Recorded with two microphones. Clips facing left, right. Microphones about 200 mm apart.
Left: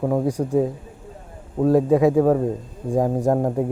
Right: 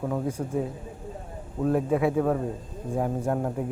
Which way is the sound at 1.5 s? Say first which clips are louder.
Left 8 dB; 35° left (ahead or behind).